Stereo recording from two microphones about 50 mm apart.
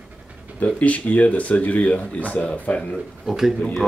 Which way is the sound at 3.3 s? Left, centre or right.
Centre.